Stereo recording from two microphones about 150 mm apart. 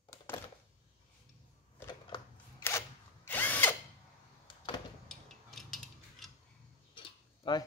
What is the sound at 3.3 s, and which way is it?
Drill, 10° left (ahead or behind).